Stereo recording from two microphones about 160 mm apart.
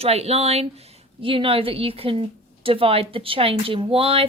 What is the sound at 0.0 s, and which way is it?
A woman's voice, 40° right (ahead or behind).